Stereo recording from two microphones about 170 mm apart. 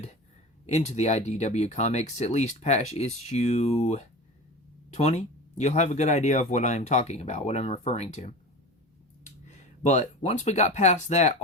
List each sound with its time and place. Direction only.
0.7 s speech: 40° left (ahead or behind)